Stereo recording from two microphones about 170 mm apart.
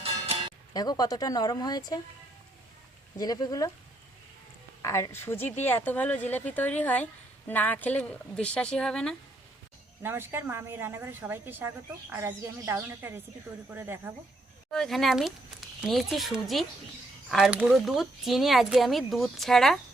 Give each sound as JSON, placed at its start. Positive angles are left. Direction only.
{"t": 0.7, "sound": "speech", "side_deg": 20}
{"t": 3.2, "sound": "speech", "side_deg": 25}
{"t": 4.8, "sound": "speech", "side_deg": 20}
{"t": 10.0, "sound": "a woman's voice", "side_deg": -15}
{"t": 14.7, "sound": "speech", "side_deg": 0}